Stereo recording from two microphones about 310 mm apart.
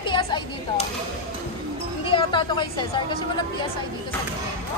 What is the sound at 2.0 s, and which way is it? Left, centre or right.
A woman's voice, centre.